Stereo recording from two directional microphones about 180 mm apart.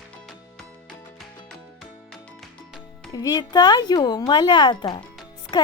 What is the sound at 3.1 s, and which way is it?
A woman's voice, 20° left (ahead or behind).